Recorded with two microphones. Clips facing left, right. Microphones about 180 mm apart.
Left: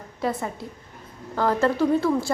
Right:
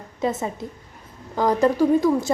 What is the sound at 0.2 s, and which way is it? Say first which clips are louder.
A woman's voice: right 3 dB; 20° right (ahead or behind).